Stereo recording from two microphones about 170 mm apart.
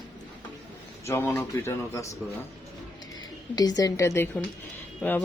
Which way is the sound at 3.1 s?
25° left (ahead or behind).